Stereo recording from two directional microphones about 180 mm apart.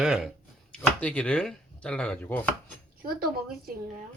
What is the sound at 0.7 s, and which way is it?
Speech, 5° left (ahead or behind).